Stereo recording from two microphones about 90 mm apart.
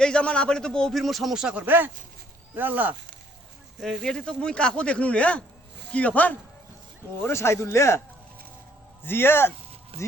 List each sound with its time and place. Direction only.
0.0 s a man's voice: 10° left (ahead or behind); by 1.6 s 10° right (ahead or behind)
1.6 s speech: 20° right (ahead or behind)
3.8 s a man's voice: 5° left (ahead or behind)
7.2 s speech: 30° left (ahead or behind)
9.0 s speech: 25° left (ahead or behind)